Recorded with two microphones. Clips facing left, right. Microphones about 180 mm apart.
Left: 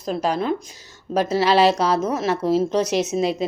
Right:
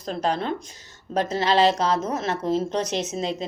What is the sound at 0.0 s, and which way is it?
Speech, 10° left (ahead or behind).